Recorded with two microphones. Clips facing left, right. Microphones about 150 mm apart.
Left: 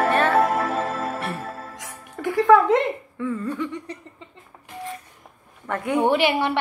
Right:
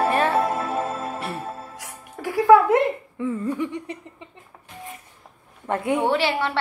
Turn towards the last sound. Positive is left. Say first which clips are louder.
# left 2 dB
turn(degrees=15)  # may be behind; listen again after turning